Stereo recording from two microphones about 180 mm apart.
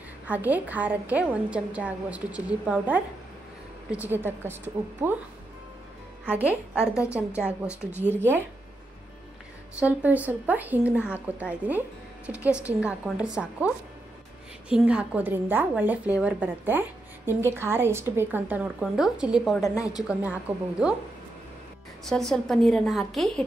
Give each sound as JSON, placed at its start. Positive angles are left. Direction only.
{"t": 0.3, "sound": "a woman's voice", "side_deg": -10}
{"t": 6.3, "sound": "a woman's voice", "side_deg": -5}
{"t": 6.8, "sound": "a woman's voice", "side_deg": 15}
{"t": 7.1, "sound": "a woman's voice", "side_deg": -5}
{"t": 9.8, "sound": "a woman's voice", "side_deg": -10}
{"t": 14.7, "sound": "a woman's voice", "side_deg": -5}
{"t": 19.6, "sound": "a woman's voice", "side_deg": 20}
{"t": 20.1, "sound": "a woman's voice", "side_deg": -10}
{"t": 22.0, "sound": "a woman's voice", "side_deg": 0}